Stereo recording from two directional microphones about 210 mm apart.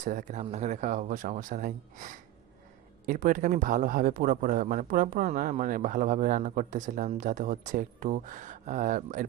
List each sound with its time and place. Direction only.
0.0 s speech: 35° right (ahead or behind)